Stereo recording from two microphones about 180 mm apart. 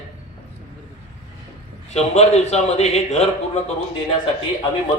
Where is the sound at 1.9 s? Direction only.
35° left (ahead or behind).